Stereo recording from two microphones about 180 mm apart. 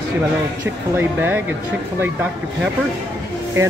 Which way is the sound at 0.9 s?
10° right (ahead or behind).